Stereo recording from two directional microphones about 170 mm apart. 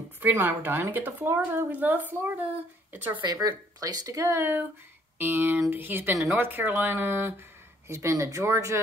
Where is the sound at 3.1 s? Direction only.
25° right (ahead or behind).